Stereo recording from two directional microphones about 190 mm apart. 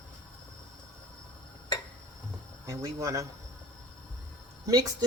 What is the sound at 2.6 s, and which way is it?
Speech, 15° right (ahead or behind).